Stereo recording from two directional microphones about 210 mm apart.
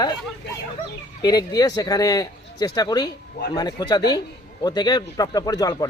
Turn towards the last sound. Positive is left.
turn(degrees=20)  # may be behind; listen again after turning